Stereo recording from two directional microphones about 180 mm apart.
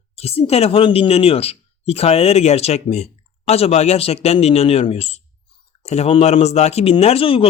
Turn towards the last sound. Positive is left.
turn(degrees=30)  # may be behind; listen again after turning